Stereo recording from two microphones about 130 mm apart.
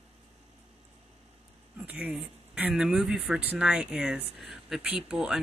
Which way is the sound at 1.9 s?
10° right (ahead or behind).